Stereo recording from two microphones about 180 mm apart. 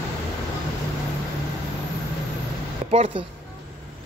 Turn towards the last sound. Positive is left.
turn(degrees=-35)  # may be behind; listen again after turning